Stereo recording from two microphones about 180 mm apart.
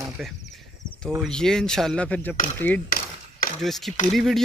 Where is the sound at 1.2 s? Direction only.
5° left (ahead or behind).